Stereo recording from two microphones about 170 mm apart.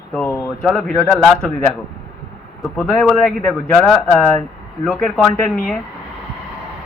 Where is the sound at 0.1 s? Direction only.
10° left (ahead or behind).